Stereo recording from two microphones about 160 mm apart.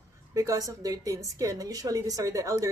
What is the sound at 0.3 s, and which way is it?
A woman's voice, 20° right (ahead or behind).